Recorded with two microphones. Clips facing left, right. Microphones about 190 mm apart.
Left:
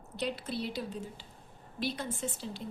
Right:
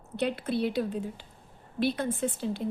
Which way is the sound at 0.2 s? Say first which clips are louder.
Right 7 dB; 60° right (ahead or behind).